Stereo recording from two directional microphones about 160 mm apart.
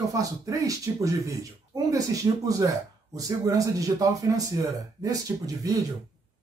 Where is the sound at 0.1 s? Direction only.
20° right (ahead or behind).